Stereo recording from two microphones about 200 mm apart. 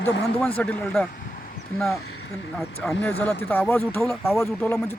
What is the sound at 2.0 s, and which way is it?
Speech, 90° left.